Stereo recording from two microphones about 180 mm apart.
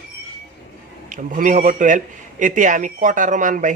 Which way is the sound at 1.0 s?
45° right (ahead or behind).